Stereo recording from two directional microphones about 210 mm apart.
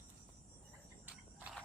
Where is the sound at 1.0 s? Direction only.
5° right (ahead or behind).